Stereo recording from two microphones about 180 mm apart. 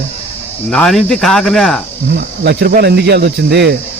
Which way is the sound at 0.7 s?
5° left (ahead or behind).